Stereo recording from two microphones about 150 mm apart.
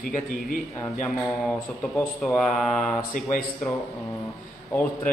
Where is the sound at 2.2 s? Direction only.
5° left (ahead or behind).